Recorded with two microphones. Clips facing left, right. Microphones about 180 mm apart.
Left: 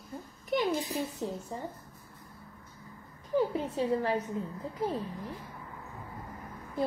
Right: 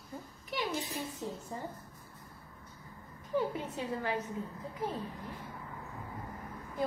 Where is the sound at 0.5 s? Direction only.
45° left (ahead or behind).